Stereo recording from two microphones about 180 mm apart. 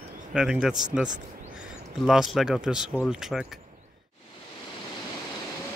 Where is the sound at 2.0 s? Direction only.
Centre (ahead or behind).